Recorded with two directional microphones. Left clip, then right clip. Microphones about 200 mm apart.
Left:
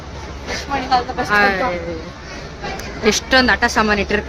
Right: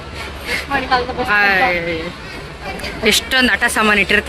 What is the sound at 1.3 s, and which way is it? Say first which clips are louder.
Speech: right 1 dB; centre (ahead or behind).